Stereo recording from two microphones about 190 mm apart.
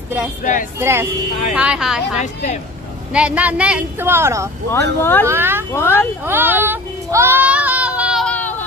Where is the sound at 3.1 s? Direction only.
5° right (ahead or behind).